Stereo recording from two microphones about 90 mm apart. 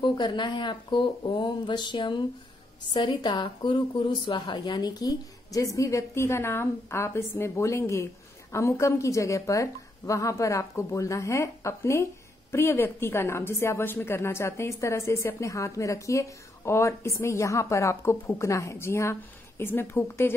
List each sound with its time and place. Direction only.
0.0 s speech: 60° left (ahead or behind)
4.6 s a woman's voice: 50° left (ahead or behind); by 20.3 s 25° left (ahead or behind)